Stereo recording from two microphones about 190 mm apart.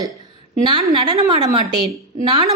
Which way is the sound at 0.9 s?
20° right (ahead or behind).